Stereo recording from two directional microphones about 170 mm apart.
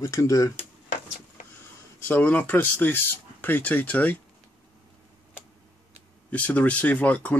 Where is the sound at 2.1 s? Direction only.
10° left (ahead or behind).